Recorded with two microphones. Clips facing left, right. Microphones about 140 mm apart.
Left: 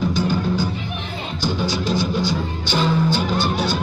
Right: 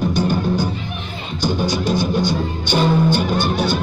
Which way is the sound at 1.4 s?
55° right (ahead or behind).